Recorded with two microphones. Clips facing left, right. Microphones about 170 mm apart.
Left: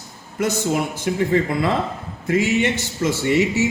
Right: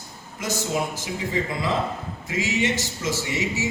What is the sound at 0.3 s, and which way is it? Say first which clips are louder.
A man's voice: left 6 dB; 60° left (ahead or behind).